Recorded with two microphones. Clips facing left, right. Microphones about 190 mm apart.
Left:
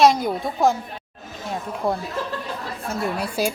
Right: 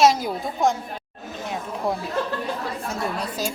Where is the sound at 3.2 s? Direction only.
10° left (ahead or behind).